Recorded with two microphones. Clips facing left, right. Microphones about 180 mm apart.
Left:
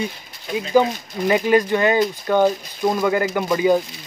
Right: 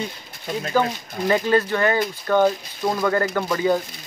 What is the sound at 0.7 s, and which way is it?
Speech, 15° left (ahead or behind).